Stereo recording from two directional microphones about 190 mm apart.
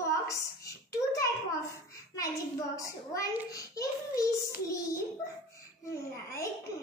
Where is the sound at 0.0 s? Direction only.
15° left (ahead or behind).